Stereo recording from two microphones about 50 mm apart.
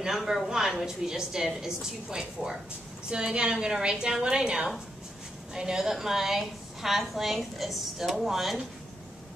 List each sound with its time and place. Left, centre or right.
0.0 s a woman's voice: centre